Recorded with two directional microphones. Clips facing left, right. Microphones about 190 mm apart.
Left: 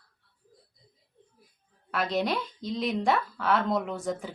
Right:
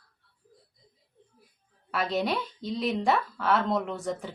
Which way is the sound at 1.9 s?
Centre (ahead or behind).